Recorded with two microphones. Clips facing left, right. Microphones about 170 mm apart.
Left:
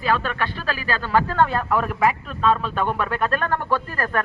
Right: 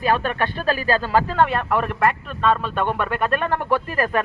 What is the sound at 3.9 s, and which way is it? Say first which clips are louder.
Speech: right 3 dB; 25° right (ahead or behind).